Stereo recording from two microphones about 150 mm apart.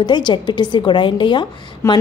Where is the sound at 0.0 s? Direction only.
30° left (ahead or behind).